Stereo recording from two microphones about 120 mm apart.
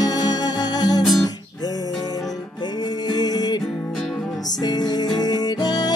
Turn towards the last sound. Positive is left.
turn(degrees=35)  # may be behind; listen again after turning